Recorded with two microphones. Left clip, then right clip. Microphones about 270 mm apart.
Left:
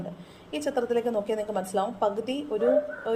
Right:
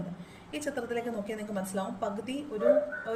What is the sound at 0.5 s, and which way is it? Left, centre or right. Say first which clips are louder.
A woman's voice: left 7 dB; centre.